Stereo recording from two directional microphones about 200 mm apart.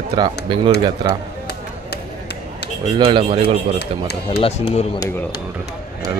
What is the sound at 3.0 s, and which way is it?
Speech, 25° right (ahead or behind).